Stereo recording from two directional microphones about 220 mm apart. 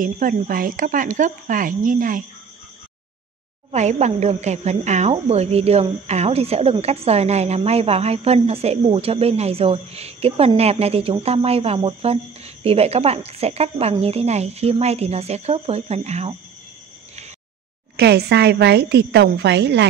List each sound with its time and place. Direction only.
0.0 s speech: 40° right (ahead or behind)
3.7 s speech: 30° right (ahead or behind)
17.9 s a woman's voice: 50° right (ahead or behind)